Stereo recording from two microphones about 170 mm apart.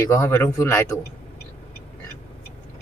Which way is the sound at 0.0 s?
15° left (ahead or behind).